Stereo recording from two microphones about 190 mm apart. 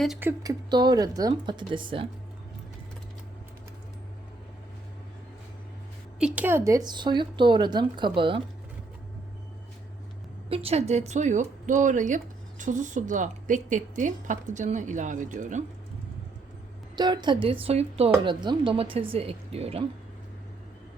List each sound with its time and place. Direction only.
0.2 s speech: 15° right (ahead or behind)
6.1 s speech: 5° right (ahead or behind); by 8.4 s 25° right (ahead or behind)
10.5 s speech: 30° right (ahead or behind)
16.9 s speech: 20° right (ahead or behind)